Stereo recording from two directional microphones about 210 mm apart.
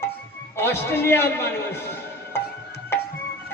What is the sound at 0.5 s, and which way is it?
Speech, 10° left (ahead or behind).